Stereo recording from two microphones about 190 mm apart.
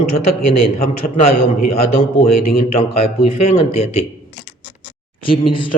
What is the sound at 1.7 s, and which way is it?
Speech, 35° left (ahead or behind).